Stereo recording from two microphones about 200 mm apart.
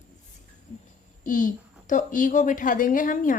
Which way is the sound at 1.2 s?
40° left (ahead or behind).